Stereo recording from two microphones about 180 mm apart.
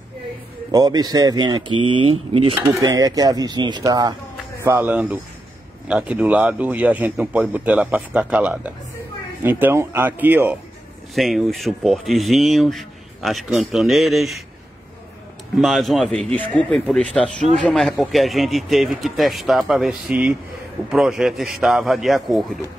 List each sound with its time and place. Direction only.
0.7 s speech: 20° right (ahead or behind)
4.6 s speech: 10° right (ahead or behind)
11.1 s speech: centre (ahead or behind)
15.5 s speech: centre (ahead or behind)